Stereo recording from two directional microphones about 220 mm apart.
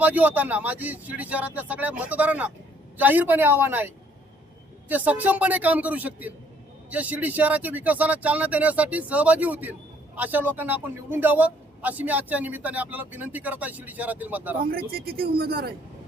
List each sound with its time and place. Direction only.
0.0 s a man's voice: 5° right (ahead or behind)
14.7 s speech: 45° right (ahead or behind)